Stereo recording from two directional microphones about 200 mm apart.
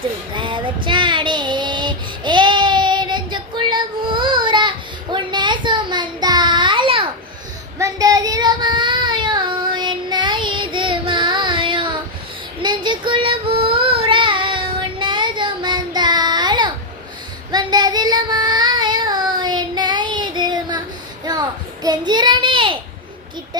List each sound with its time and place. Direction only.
0.3 s child singing: 25° right (ahead or behind)
21.8 s child singing: 20° right (ahead or behind)